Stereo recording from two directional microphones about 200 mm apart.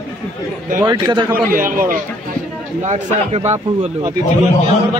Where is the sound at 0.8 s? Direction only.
20° right (ahead or behind).